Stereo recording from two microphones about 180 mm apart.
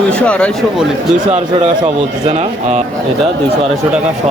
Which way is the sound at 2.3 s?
40° right (ahead or behind).